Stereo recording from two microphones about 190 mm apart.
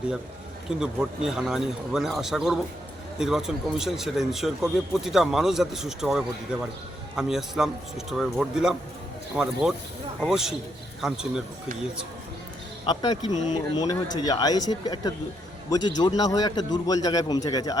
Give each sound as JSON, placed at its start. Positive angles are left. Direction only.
{"t": 0.8, "sound": "a man's voice", "side_deg": -5}
{"t": 12.8, "sound": "a man's voice", "side_deg": 25}